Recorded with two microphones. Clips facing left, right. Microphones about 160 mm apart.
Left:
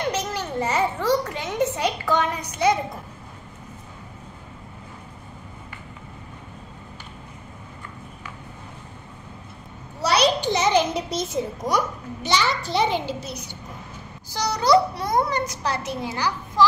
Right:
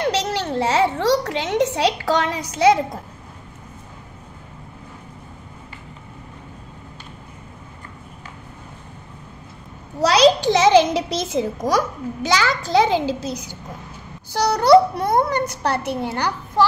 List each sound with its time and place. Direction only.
0.1 s a sound: 85° right
10.0 s a child's voice: 90° right
14.3 s a child's voice: 60° right (ahead or behind)